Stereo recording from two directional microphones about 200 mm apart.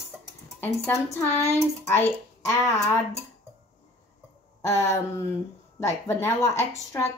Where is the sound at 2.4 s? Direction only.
15° left (ahead or behind).